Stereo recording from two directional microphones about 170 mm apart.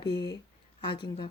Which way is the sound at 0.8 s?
30° left (ahead or behind).